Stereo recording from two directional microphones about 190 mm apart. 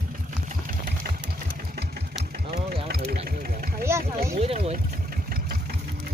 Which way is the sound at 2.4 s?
55° right (ahead or behind).